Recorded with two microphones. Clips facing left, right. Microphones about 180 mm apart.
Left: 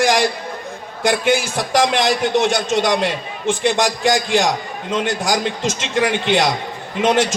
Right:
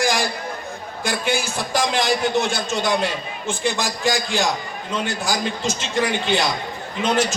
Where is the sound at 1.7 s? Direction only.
70° left (ahead or behind).